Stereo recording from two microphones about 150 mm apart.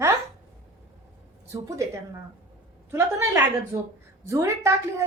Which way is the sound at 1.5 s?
20° right (ahead or behind).